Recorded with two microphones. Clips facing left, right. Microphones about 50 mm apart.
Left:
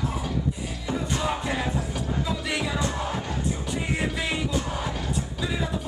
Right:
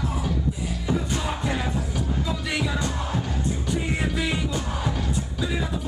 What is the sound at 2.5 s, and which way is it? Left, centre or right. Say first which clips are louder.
Music: right 1 dB; centre.